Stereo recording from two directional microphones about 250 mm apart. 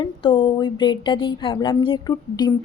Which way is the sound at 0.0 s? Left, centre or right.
Centre.